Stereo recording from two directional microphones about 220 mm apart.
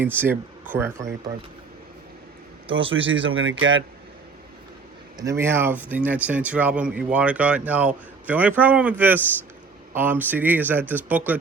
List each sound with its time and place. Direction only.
0.0 s speech: 10° right (ahead or behind)
3.1 s speech: 60° right (ahead or behind)
5.1 s speech: 15° right (ahead or behind)